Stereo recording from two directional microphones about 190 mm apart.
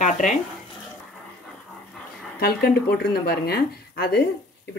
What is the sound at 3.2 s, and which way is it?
Speech, 55° left (ahead or behind).